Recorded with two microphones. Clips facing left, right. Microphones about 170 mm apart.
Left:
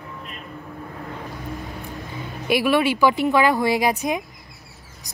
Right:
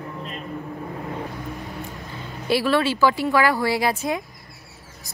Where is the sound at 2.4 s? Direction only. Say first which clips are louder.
Left 1 dB; 15° left (ahead or behind).